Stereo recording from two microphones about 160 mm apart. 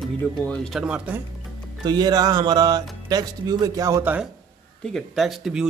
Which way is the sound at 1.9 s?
25° right (ahead or behind).